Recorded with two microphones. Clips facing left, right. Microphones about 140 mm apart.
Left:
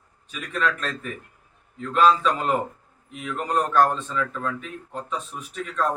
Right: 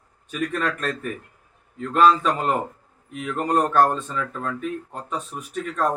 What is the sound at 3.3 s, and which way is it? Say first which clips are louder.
Speech: right 2 dB; 45° right (ahead or behind).